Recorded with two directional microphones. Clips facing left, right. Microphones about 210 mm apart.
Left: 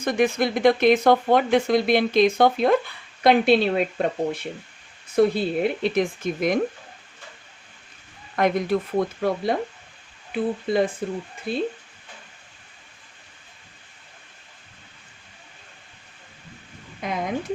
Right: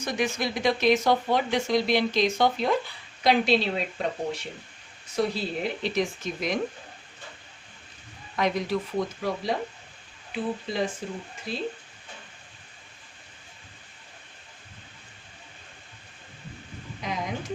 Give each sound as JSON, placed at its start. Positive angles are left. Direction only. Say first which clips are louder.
{"t": 0.0, "sound": "speech", "louder": "left 7 dB", "side_deg": 55}
{"t": 8.4, "sound": "speech", "louder": "left 5 dB", "side_deg": 55}
{"t": 17.0, "sound": "a sound", "louder": "left 4 dB", "side_deg": 55}